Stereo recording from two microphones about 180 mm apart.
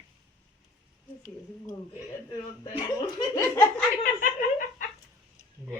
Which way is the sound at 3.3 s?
15° left (ahead or behind).